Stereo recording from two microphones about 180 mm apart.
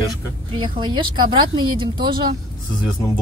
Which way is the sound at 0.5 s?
25° right (ahead or behind).